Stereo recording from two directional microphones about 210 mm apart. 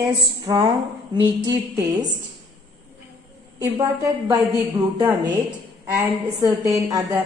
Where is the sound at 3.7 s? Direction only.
15° right (ahead or behind).